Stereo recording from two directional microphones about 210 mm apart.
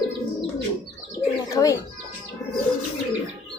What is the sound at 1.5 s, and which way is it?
Bird, 15° left (ahead or behind).